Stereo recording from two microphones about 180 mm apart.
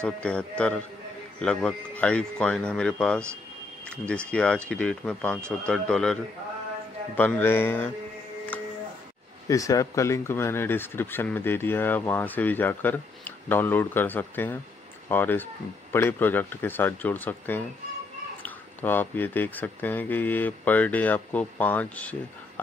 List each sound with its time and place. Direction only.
0.0 s speech: 5° left (ahead or behind)
7.2 s speech: 10° left (ahead or behind)
8.5 s music: 10° left (ahead or behind)
9.5 s speech: 20° left (ahead or behind)